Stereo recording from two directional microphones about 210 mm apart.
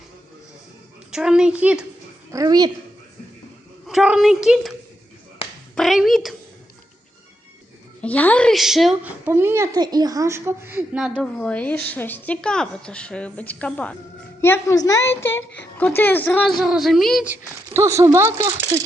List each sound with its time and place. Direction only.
1.1 s a woman's voice: 5° right (ahead or behind)
2.3 s a woman's voice: 15° right (ahead or behind)
3.8 s a woman's voice: 5° right (ahead or behind)
5.7 s a woman's voice: centre (ahead or behind)
8.0 s a woman's voice: 5° left (ahead or behind)
11.2 s a woman's voice: 5° left (ahead or behind)
17.7 s a woman's voice: 15° right (ahead or behind)